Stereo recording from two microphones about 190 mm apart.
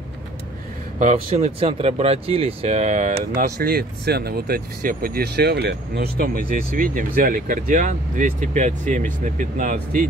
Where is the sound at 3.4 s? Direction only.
55° right (ahead or behind).